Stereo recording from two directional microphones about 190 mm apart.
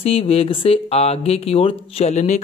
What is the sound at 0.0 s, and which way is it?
Speech, 30° left (ahead or behind).